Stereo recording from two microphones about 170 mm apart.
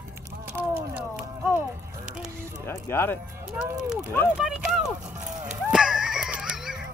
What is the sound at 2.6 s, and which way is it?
Music, 15° left (ahead or behind).